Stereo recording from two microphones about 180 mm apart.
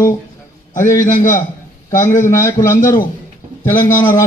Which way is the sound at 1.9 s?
15° left (ahead or behind).